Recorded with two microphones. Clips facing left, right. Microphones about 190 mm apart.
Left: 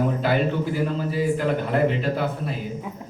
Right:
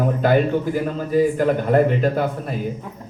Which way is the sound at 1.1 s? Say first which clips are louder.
Right 9 dB; 50° right (ahead or behind).